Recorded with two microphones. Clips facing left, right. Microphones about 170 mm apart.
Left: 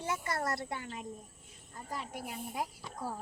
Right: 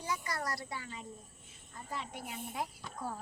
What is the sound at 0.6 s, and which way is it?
Speech, 55° left (ahead or behind).